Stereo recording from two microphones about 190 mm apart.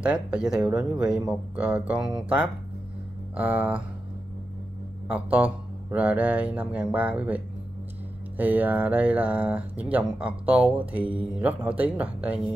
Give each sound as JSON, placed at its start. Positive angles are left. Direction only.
{"t": 0.0, "sound": "speech", "side_deg": -5}
{"t": 5.0, "sound": "speech", "side_deg": -5}